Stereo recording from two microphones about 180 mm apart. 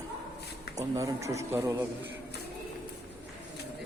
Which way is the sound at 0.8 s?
20° right (ahead or behind).